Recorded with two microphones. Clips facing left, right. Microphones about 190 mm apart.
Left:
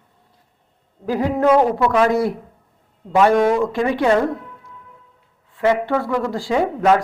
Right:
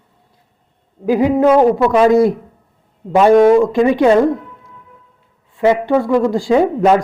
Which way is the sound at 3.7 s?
20° right (ahead or behind).